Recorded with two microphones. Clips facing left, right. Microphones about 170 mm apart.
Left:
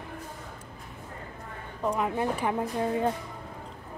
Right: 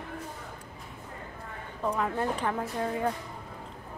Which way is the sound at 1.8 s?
15° left (ahead or behind).